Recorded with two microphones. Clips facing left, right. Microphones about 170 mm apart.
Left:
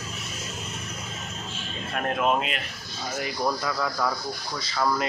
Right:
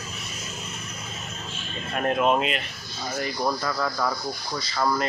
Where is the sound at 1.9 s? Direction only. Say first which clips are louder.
Right 3 dB; centre (ahead or behind).